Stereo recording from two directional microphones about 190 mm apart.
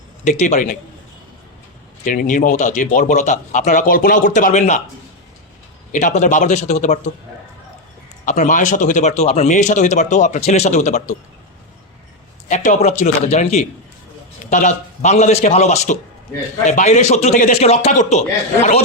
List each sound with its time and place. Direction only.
0.3 s speech: 40° left (ahead or behind)
2.0 s speech: 45° left (ahead or behind)
5.9 s speech: 40° left (ahead or behind)
8.2 s speech: 40° left (ahead or behind)
12.5 s speech: 40° left (ahead or behind)